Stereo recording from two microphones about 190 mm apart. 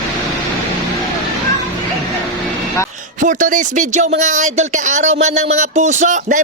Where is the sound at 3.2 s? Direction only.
45° right (ahead or behind).